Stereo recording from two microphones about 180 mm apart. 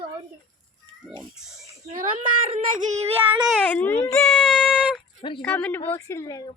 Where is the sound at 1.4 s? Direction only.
Centre (ahead or behind).